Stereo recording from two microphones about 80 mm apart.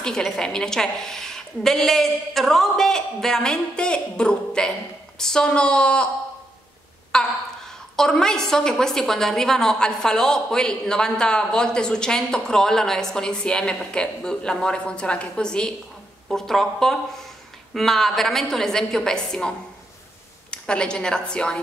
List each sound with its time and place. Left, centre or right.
0.0 s a woman's voice: centre
7.1 s a sound: centre
7.9 s a woman's voice: centre
20.5 s a woman's voice: centre